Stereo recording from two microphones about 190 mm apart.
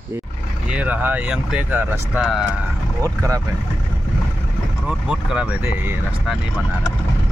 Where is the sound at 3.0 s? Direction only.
20° right (ahead or behind).